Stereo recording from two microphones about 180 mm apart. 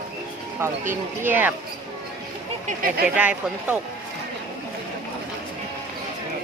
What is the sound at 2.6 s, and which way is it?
Speech, 50° right (ahead or behind).